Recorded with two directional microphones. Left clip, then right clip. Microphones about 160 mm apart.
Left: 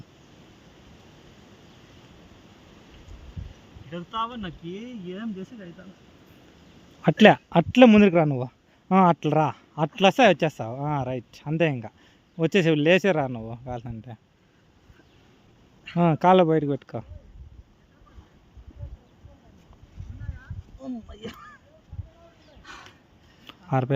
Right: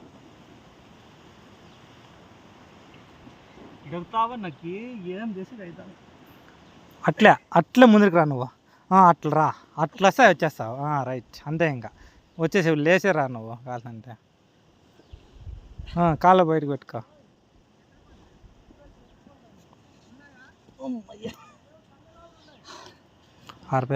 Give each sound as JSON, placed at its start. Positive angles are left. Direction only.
{"t": 3.9, "sound": "speech", "side_deg": 10}
{"t": 7.0, "sound": "a man's voice", "side_deg": 40}
{"t": 16.0, "sound": "speech", "side_deg": 30}
{"t": 20.8, "sound": "speech", "side_deg": 10}
{"t": 23.5, "sound": "a sound", "side_deg": 35}